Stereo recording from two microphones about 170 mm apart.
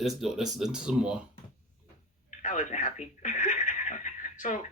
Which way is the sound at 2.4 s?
45° left (ahead or behind).